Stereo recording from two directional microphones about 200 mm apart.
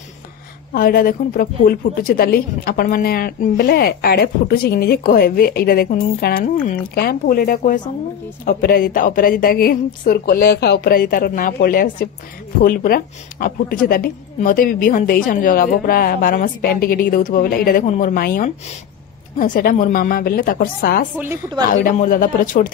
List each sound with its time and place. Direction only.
0.7 s a woman's voice: 45° left (ahead or behind)
21.2 s a woman's voice: 15° right (ahead or behind)
21.8 s a woman's voice: 45° left (ahead or behind)